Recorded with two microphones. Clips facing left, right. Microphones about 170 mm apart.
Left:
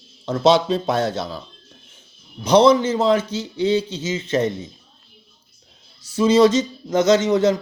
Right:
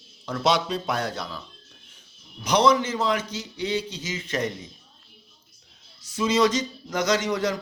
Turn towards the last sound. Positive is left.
turn(degrees=25)  # may be behind; listen again after turning